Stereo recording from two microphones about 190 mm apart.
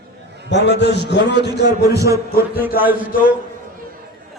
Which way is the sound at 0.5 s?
65° left (ahead or behind).